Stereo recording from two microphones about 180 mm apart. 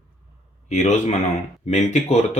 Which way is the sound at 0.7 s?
40° left (ahead or behind).